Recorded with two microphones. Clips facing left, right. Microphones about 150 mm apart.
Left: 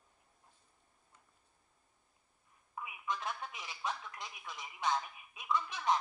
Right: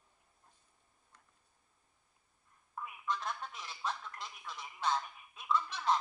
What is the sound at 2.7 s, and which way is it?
Speech, 10° left (ahead or behind).